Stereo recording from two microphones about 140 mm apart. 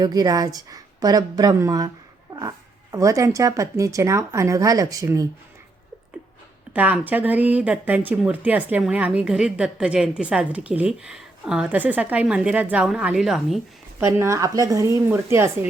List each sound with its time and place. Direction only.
0.0 s speech: 25° right (ahead or behind)
6.7 s speech: 10° right (ahead or behind)
14.0 s speech: 20° right (ahead or behind)